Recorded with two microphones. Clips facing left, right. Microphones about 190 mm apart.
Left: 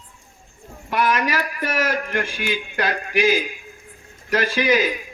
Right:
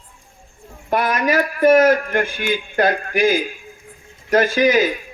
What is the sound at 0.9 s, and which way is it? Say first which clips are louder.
Speech: right 3 dB; 50° right (ahead or behind).